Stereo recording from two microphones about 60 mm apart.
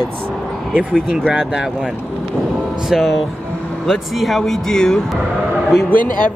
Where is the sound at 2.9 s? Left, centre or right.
Centre.